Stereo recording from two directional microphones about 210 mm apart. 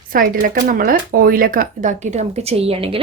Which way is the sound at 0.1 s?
40° right (ahead or behind).